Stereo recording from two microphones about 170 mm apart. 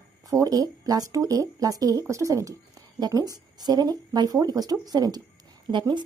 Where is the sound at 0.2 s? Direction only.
20° right (ahead or behind).